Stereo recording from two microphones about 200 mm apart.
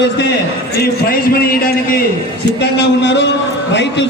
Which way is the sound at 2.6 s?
60° left (ahead or behind).